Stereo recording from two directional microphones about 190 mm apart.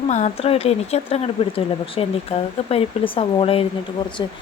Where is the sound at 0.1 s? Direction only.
40° left (ahead or behind).